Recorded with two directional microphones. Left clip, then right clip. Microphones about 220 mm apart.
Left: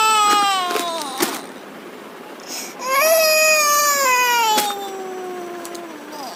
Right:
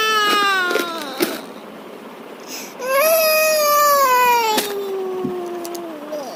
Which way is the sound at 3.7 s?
15° left (ahead or behind).